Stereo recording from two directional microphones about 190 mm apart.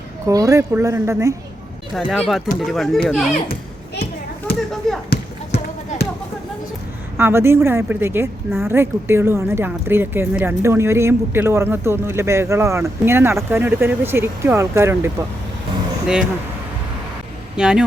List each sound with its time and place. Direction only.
0.3 s speech: 15° right (ahead or behind)
1.9 s speech: centre (ahead or behind)
4.5 s a sound: 55° left (ahead or behind)
5.0 s basketball bounce: 55° left (ahead or behind)
7.2 s speech: 10° right (ahead or behind)
17.6 s speech: 5° right (ahead or behind)